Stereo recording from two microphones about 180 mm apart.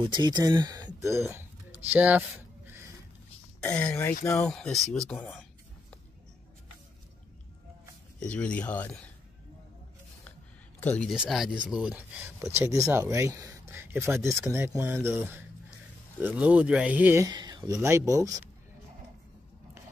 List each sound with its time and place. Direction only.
0.0 s speech: 25° right (ahead or behind)
3.6 s speech: 5° left (ahead or behind)
8.2 s speech: 5° left (ahead or behind)
10.8 s speech: 5° left (ahead or behind); by 17.3 s 10° right (ahead or behind)
17.3 s speech: 25° right (ahead or behind)